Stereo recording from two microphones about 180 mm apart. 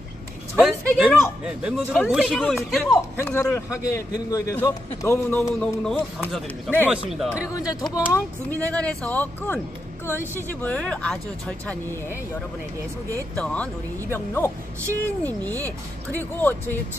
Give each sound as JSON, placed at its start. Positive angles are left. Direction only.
{"t": 0.6, "sound": "a sound", "side_deg": -5}
{"t": 1.4, "sound": "a man's voice", "side_deg": -5}
{"t": 7.1, "sound": "a man's voice", "side_deg": 0}
{"t": 7.5, "sound": "a man's voice", "side_deg": 20}
{"t": 13.4, "sound": "a man's voice", "side_deg": 5}